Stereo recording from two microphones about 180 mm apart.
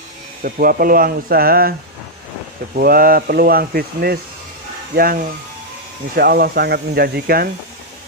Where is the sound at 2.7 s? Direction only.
55° right (ahead or behind).